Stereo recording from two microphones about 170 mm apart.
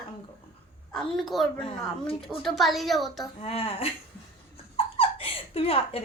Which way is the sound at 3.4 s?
35° left (ahead or behind).